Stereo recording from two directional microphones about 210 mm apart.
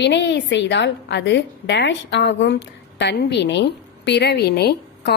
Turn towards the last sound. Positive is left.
turn(degrees=50)  # may be behind; listen again after turning